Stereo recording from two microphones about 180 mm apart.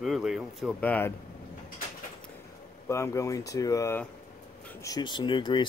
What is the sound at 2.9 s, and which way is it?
Speech, 15° left (ahead or behind).